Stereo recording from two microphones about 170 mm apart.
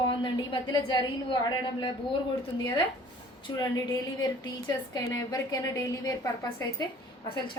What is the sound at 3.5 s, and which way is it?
A woman's voice, 20° left (ahead or behind).